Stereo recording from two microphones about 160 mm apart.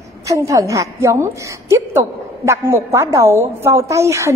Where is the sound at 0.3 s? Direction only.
20° right (ahead or behind).